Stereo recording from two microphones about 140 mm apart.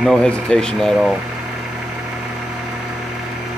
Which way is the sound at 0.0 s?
5° left (ahead or behind).